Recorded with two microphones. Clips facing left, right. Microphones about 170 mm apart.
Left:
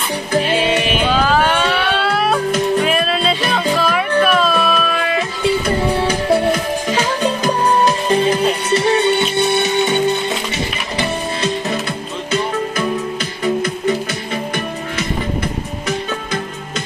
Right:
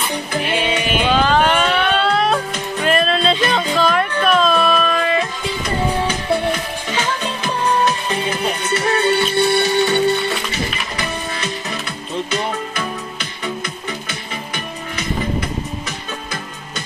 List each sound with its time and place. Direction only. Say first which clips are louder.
1.1 s a sound: right 1 dB; 5° left (ahead or behind)
2.8 s music: even; 5° left (ahead or behind)
6.4 s music: left 5 dB; 35° left (ahead or behind); by 10.0 s 20° left (ahead or behind)